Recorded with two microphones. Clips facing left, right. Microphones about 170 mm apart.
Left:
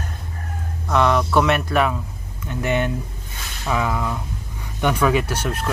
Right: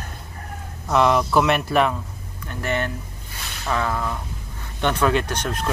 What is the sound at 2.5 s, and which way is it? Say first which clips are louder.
Speech: left 4 dB; 15° left (ahead or behind).